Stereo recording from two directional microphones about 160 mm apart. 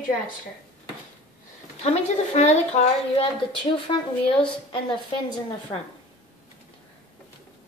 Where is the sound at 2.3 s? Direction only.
45° left (ahead or behind).